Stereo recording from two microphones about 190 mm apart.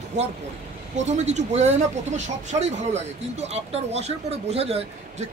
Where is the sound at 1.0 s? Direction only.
35° right (ahead or behind).